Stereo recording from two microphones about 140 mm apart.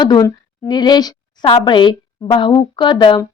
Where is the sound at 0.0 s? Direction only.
30° left (ahead or behind).